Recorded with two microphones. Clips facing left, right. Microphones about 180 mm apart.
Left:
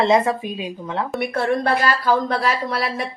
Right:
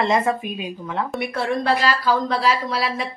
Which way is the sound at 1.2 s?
50° left (ahead or behind).